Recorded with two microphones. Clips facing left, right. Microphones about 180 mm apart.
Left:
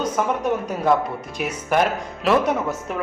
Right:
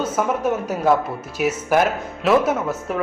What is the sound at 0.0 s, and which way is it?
Speech, 5° right (ahead or behind).